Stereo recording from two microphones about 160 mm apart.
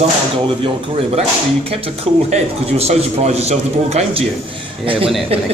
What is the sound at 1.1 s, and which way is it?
A man's voice, 35° right (ahead or behind).